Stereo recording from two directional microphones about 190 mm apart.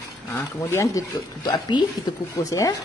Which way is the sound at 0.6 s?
15° left (ahead or behind).